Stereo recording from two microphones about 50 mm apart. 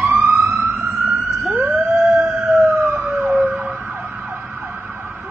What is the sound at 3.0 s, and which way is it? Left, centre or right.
Emergency vehicle, right.